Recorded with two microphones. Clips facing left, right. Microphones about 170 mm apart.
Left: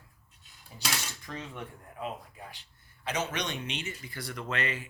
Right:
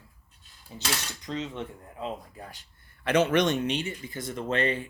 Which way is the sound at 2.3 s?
40° right (ahead or behind).